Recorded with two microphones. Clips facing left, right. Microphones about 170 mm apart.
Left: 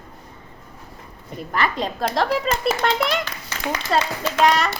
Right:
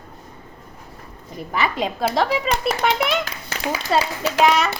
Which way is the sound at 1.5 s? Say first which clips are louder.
Right 1 dB; 5° right (ahead or behind).